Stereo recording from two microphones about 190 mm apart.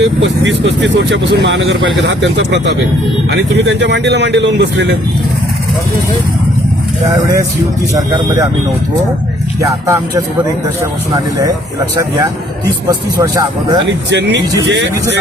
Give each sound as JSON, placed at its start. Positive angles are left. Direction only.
{"t": 0.2, "sound": "a man's voice", "side_deg": -65}
{"t": 7.1, "sound": "speech", "side_deg": -20}
{"t": 9.6, "sound": "speech", "side_deg": -15}
{"t": 12.9, "sound": "speech", "side_deg": -20}
{"t": 14.1, "sound": "a man's voice", "side_deg": -65}